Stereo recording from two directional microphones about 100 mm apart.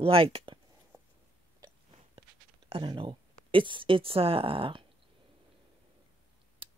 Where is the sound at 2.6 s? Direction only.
65° right (ahead or behind).